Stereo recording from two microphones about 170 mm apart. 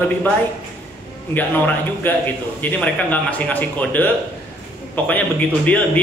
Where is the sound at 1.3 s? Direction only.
10° left (ahead or behind).